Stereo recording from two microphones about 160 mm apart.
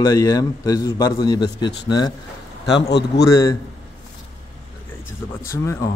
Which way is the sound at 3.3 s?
20° left (ahead or behind).